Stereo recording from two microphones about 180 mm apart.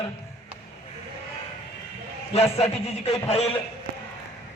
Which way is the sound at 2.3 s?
35° left (ahead or behind).